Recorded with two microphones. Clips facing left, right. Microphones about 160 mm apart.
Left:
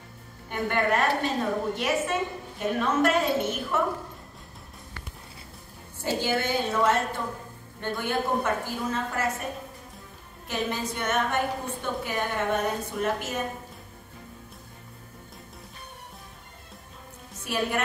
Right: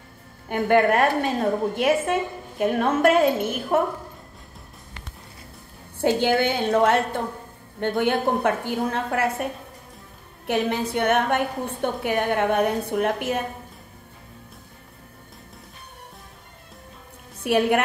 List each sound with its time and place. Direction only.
0.5 s a woman's voice: 55° right (ahead or behind)
5.9 s a woman's voice: 60° right (ahead or behind)
17.4 s a woman's voice: 60° right (ahead or behind)